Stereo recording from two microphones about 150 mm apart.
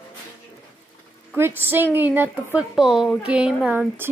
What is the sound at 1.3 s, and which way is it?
Speech, 15° right (ahead or behind).